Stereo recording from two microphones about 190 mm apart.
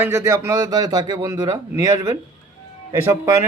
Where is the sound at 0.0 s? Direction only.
15° right (ahead or behind).